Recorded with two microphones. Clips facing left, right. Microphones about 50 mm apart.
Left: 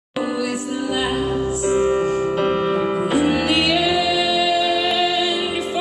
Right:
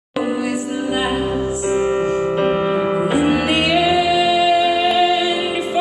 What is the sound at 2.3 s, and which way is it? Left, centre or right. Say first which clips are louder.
Music: right 2 dB; centre.